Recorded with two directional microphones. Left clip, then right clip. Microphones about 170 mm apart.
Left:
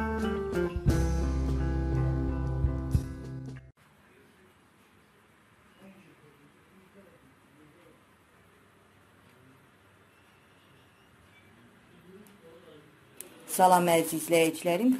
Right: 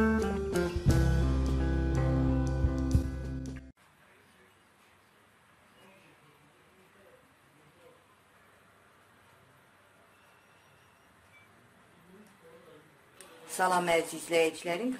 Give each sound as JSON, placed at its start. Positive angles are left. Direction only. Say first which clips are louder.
{"t": 0.0, "sound": "music", "louder": "right 2 dB", "side_deg": 0}
{"t": 13.6, "sound": "a woman's voice", "louder": "left 5 dB", "side_deg": 25}